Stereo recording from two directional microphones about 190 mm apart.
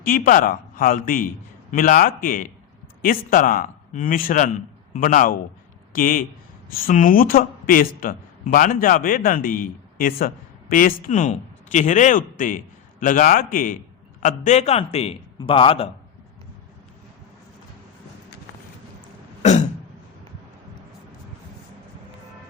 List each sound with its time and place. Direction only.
0.0 s a man's voice: 45° left (ahead or behind); by 15.9 s 30° left (ahead or behind)
19.4 s throat clearing: 35° left (ahead or behind)